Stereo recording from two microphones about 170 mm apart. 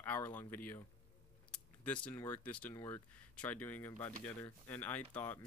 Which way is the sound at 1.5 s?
5° left (ahead or behind).